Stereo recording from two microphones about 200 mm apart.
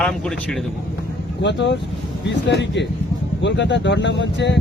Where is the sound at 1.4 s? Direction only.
60° left (ahead or behind).